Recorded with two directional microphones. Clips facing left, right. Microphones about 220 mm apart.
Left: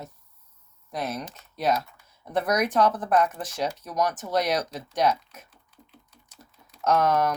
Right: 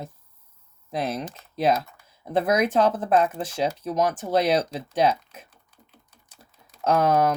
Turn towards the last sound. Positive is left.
turn(degrees=-30)  # may be behind; listen again after turning